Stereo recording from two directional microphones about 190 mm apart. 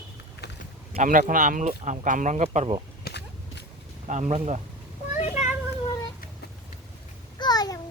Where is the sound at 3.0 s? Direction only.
60° left (ahead or behind).